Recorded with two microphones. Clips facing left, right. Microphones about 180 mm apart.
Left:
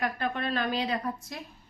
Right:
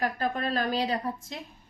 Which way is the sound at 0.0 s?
40° right (ahead or behind).